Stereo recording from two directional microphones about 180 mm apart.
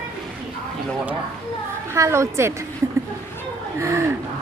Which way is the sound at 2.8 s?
15° right (ahead or behind).